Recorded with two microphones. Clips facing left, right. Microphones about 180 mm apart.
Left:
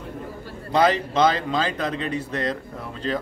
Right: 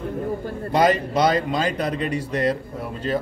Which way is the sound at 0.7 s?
10° right (ahead or behind).